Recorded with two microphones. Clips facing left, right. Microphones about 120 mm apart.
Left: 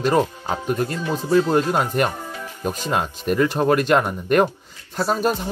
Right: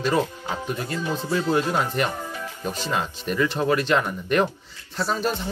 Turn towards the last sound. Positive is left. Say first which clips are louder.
# left 4 dB
turn(degrees=45)  # may be behind; listen again after turning